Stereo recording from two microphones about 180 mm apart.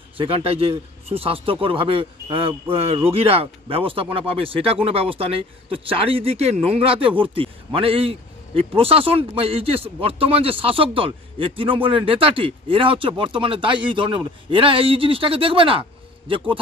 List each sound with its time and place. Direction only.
0.2 s a man's voice: 35° right (ahead or behind)